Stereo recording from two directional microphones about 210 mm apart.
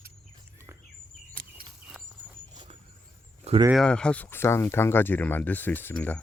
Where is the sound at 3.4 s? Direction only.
30° right (ahead or behind).